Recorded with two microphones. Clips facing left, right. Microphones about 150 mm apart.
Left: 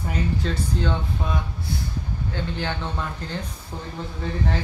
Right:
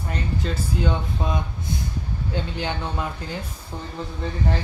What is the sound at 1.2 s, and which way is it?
Speech, 20° right (ahead or behind).